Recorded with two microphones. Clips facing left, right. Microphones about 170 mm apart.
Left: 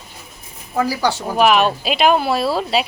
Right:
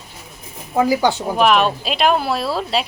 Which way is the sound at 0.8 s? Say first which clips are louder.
Right 3 dB; 20° right (ahead or behind).